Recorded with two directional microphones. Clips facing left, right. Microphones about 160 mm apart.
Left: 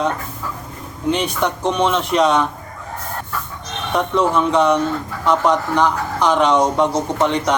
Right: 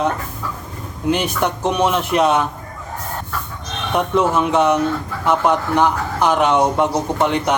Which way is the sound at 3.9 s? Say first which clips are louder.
Even; 5° right (ahead or behind).